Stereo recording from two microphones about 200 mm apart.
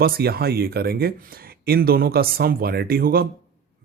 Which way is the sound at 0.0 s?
50° right (ahead or behind).